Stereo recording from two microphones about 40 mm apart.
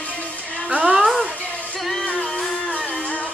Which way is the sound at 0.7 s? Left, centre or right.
Right.